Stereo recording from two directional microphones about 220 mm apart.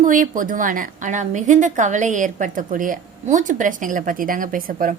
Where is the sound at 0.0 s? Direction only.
35° right (ahead or behind).